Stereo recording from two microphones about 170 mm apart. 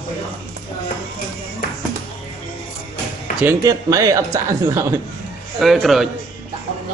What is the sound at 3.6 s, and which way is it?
A man's voice, 20° right (ahead or behind).